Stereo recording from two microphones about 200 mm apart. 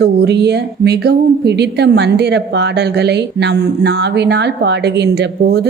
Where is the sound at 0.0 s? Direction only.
55° right (ahead or behind).